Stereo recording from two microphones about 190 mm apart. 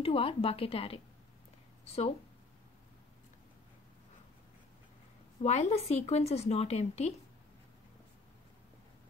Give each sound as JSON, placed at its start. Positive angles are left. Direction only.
{"t": 0.0, "sound": "a woman's voice", "side_deg": 30}
{"t": 5.4, "sound": "a woman's voice", "side_deg": 35}